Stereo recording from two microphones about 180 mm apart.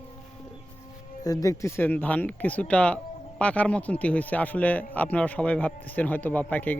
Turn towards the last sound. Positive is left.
turn(degrees=10)  # may be behind; listen again after turning